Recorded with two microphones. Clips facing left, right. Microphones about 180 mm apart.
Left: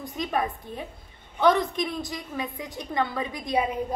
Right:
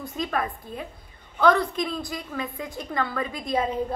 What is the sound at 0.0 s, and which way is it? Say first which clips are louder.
A woman's voice: even; 20° left (ahead or behind).